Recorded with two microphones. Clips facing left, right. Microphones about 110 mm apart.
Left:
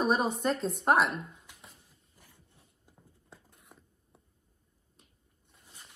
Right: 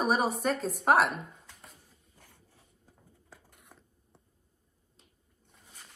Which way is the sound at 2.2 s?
65° right (ahead or behind).